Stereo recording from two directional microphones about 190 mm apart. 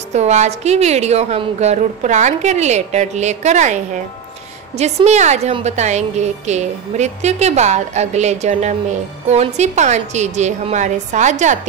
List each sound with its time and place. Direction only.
0.1 s a woman's voice: 35° right (ahead or behind)